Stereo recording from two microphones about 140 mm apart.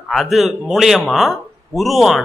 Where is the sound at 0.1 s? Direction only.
Centre (ahead or behind).